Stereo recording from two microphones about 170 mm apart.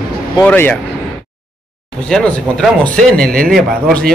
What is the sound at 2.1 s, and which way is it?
Speech, 5° left (ahead or behind).